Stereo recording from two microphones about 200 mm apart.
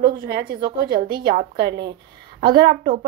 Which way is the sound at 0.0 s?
50° right (ahead or behind).